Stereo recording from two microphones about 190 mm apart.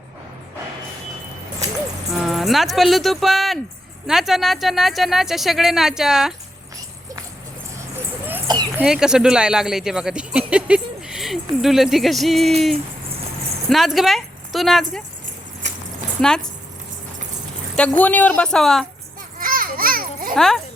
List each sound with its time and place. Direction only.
2.1 s speech: centre (ahead or behind)
7.8 s a sound: 15° right (ahead or behind)
8.8 s speech: 5° right (ahead or behind)
16.2 s speech: 5° left (ahead or behind)
17.7 s speech: 10° left (ahead or behind)
19.4 s children playing: 50° right (ahead or behind)
20.3 s speech: centre (ahead or behind)